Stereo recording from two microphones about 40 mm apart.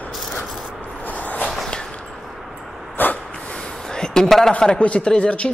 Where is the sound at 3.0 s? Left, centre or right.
Left.